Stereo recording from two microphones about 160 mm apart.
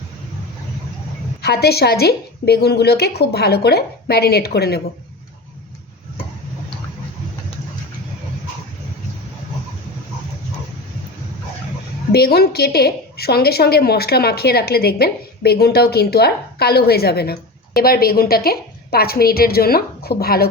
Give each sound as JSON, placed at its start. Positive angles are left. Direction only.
{"t": 1.4, "sound": "a woman's voice", "side_deg": 85}
{"t": 12.1, "sound": "a woman's voice", "side_deg": 80}